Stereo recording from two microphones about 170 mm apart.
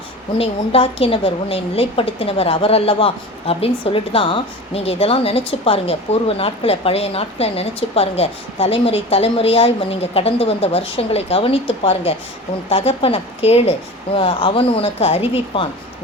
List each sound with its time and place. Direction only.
0.3 s a woman's voice: 35° left (ahead or behind)